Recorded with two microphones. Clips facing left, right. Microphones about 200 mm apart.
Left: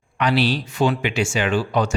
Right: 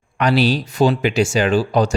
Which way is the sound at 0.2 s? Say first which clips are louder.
Right 3 dB; 40° right (ahead or behind).